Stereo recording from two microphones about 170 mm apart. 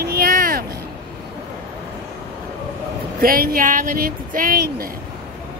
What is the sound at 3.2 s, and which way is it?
Speech, 60° right (ahead or behind).